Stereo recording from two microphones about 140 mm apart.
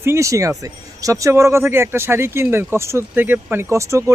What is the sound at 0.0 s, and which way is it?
Speech, 20° right (ahead or behind).